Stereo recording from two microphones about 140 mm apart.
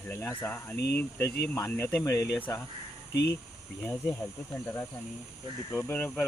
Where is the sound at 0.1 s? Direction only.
15° left (ahead or behind).